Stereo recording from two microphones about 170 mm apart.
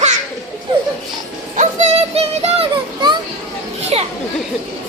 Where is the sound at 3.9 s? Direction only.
35° right (ahead or behind).